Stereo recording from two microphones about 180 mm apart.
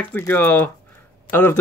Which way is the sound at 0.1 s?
10° left (ahead or behind).